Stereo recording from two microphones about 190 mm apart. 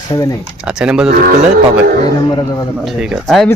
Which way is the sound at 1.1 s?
50° right (ahead or behind).